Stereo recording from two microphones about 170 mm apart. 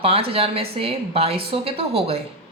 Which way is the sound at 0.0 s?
35° right (ahead or behind).